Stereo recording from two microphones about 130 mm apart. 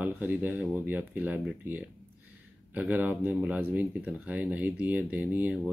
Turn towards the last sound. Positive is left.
turn(degrees=-10)  # may be behind; listen again after turning